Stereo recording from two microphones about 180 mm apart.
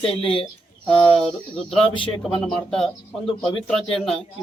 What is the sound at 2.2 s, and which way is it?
Speech, centre (ahead or behind).